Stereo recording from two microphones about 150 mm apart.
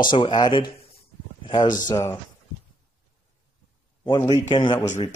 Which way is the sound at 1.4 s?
30° left (ahead or behind).